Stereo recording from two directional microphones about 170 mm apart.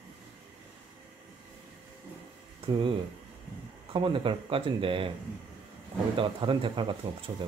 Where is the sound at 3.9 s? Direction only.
30° right (ahead or behind).